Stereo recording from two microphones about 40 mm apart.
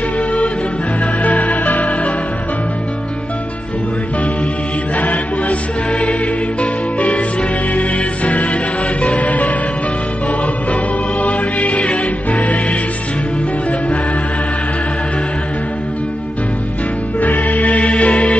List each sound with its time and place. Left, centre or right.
1.2 s music: left
4.9 s mantra: left
5.9 s music: left
10.7 s music: left
17.2 s music: left